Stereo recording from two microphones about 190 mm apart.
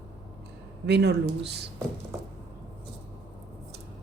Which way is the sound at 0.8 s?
60° right (ahead or behind).